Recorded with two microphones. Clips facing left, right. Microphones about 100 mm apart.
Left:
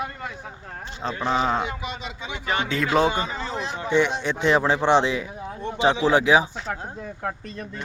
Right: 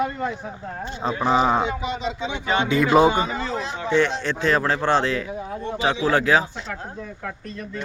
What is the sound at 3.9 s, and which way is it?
A man's voice, 15° left (ahead or behind).